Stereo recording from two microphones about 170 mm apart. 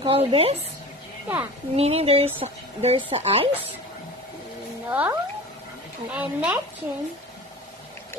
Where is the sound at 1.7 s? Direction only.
35° right (ahead or behind).